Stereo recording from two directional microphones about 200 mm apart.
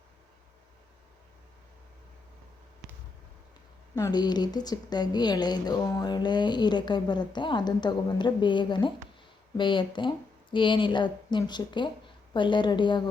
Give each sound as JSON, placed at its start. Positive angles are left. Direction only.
{"t": 3.9, "sound": "speech", "side_deg": 20}